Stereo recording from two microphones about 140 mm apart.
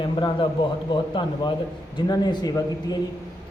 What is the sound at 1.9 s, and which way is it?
A man's voice, 30° left (ahead or behind).